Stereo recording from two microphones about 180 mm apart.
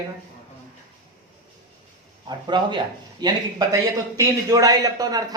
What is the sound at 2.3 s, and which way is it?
Speech, 25° right (ahead or behind).